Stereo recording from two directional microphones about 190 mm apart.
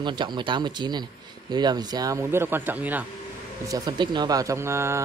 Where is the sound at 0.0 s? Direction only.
25° right (ahead or behind); by 3.1 s 10° right (ahead or behind).